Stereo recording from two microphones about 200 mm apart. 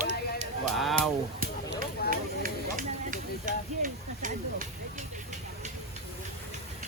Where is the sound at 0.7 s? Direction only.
Centre (ahead or behind).